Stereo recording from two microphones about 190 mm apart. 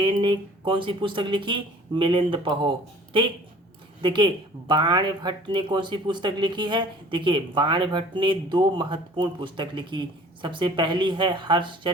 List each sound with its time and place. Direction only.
0.0 s speech: 25° right (ahead or behind)